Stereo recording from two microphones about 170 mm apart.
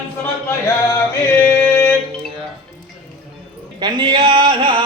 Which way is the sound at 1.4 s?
10° left (ahead or behind).